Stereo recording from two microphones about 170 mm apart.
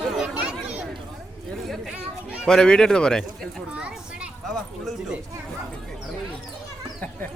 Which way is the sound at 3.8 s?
5° right (ahead or behind).